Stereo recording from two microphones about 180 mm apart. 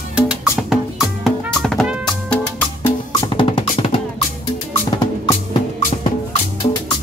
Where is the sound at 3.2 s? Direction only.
25° left (ahead or behind).